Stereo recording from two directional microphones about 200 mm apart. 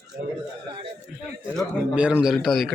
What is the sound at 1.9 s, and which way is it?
Speech, 5° right (ahead or behind).